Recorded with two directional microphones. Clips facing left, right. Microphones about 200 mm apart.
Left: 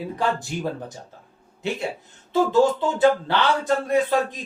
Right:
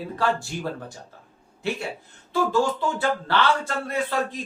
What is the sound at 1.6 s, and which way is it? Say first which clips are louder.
A man's voice: left 2 dB; 20° left (ahead or behind).